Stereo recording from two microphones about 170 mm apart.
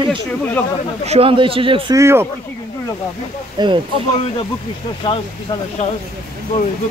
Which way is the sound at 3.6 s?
25° right (ahead or behind).